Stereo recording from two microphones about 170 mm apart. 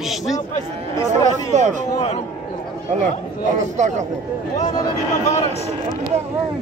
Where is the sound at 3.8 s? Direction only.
45° right (ahead or behind).